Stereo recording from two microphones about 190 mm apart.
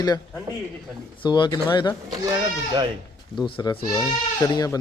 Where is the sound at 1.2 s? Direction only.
25° left (ahead or behind).